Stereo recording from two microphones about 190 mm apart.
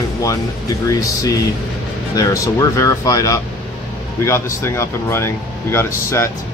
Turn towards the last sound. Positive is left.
turn(degrees=15)  # may be behind; listen again after turning